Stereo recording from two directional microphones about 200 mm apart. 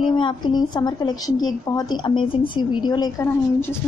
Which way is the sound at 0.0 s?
25° left (ahead or behind).